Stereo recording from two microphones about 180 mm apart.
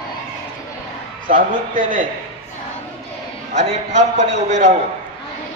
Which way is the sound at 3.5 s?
40° right (ahead or behind).